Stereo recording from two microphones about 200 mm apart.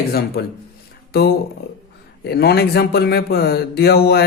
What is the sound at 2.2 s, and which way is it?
A man's voice, 55° left (ahead or behind).